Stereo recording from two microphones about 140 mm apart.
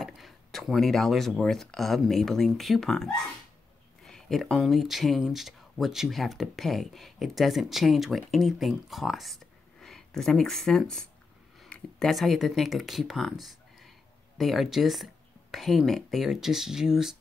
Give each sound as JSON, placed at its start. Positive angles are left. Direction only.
{"t": 0.0, "sound": "speech", "side_deg": 0}